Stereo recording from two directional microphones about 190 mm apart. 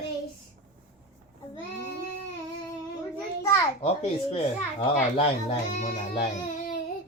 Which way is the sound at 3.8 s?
30° left (ahead or behind).